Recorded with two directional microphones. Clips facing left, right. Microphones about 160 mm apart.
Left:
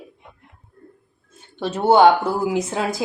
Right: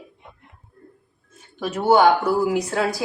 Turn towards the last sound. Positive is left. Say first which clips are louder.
# even
turn(degrees=20)  # may be behind; listen again after turning